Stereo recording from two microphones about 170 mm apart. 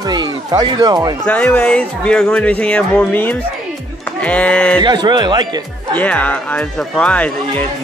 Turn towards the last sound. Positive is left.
turn(degrees=5)  # may be behind; listen again after turning